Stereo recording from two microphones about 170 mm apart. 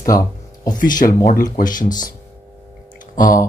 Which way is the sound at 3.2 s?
50° left (ahead or behind).